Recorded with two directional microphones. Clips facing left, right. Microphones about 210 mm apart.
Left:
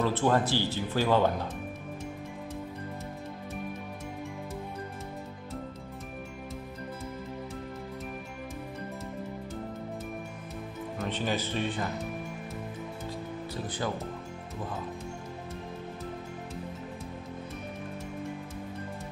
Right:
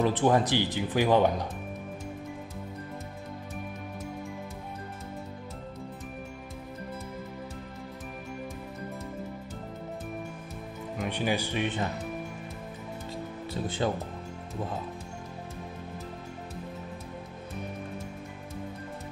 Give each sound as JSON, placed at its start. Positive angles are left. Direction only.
{"t": 0.0, "sound": "speech", "side_deg": -15}
{"t": 11.0, "sound": "speech", "side_deg": -10}
{"t": 13.5, "sound": "speech", "side_deg": -25}